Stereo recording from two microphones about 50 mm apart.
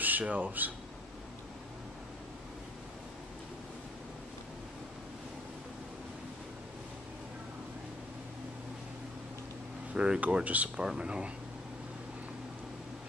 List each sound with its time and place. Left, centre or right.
0.0 s speech: right
9.9 s speech: right